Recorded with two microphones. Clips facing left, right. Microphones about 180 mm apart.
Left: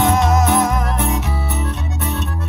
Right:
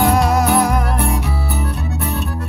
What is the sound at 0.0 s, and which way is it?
Music, centre (ahead or behind).